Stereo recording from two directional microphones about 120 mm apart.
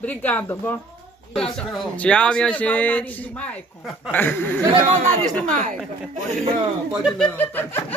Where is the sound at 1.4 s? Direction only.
5° left (ahead or behind).